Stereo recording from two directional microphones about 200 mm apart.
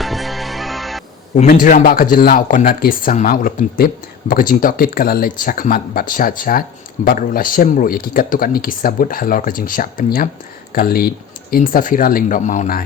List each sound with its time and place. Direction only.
0.0 s music: centre (ahead or behind)
1.4 s speech: 40° left (ahead or behind)